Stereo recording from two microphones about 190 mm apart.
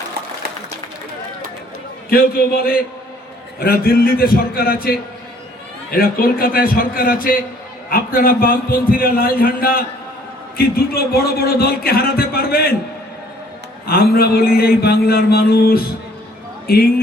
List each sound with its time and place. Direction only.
2.0 s a man's voice: 50° left (ahead or behind)
13.8 s a man's voice: 55° left (ahead or behind)